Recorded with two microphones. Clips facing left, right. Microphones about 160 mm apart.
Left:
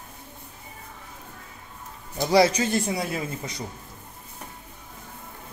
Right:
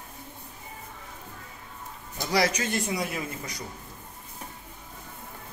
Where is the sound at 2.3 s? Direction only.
30° left (ahead or behind).